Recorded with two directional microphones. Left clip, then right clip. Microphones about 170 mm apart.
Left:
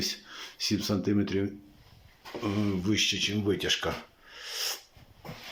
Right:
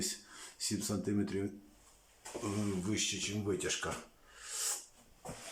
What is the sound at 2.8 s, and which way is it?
Speech, 5° left (ahead or behind).